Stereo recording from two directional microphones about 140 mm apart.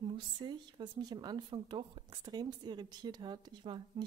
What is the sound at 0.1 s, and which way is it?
A woman's voice, 35° right (ahead or behind).